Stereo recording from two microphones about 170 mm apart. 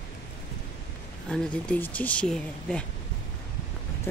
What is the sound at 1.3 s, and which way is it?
Speech, 5° left (ahead or behind).